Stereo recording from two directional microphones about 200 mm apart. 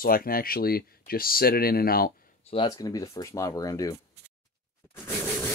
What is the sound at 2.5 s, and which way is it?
Speech, 20° left (ahead or behind).